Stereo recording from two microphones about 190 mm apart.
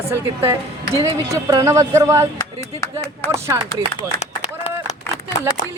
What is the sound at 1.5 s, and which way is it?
Speech, 15° right (ahead or behind).